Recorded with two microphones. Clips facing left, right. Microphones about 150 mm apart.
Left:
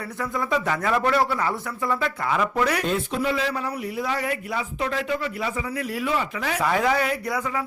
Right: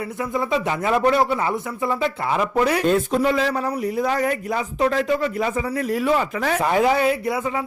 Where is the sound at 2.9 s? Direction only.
40° right (ahead or behind).